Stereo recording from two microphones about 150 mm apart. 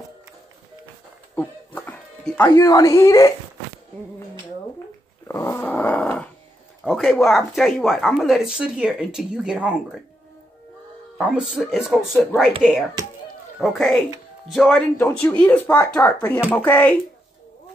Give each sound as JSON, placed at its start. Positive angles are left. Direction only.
{"t": 1.3, "sound": "music", "side_deg": 10}
{"t": 5.3, "sound": "growling", "side_deg": 15}
{"t": 6.8, "sound": "speech", "side_deg": 0}
{"t": 11.1, "sound": "speech", "side_deg": -5}
{"t": 13.6, "sound": "speech", "side_deg": 0}
{"t": 15.0, "sound": "speech", "side_deg": 10}